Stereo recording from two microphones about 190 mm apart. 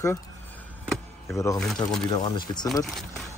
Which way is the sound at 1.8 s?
20° left (ahead or behind).